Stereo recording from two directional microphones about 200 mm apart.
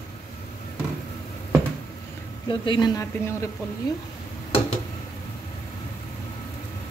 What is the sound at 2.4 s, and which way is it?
Speech, 20° left (ahead or behind).